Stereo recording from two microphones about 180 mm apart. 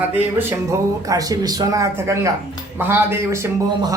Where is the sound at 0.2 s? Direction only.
15° right (ahead or behind).